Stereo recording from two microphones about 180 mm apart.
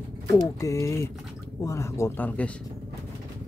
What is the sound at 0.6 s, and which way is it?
Speech, 15° left (ahead or behind).